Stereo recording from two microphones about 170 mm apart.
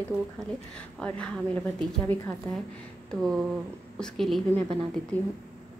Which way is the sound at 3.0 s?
Centre (ahead or behind).